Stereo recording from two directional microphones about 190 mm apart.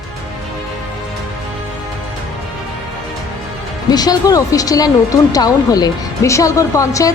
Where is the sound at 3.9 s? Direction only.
20° left (ahead or behind).